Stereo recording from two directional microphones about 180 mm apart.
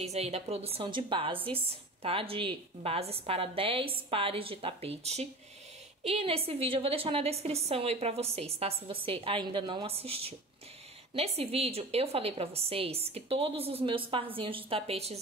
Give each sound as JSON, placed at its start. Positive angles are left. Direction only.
{"t": 0.0, "sound": "a woman's voice", "side_deg": -35}